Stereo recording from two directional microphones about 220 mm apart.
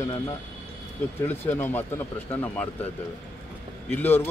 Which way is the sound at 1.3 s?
10° left (ahead or behind).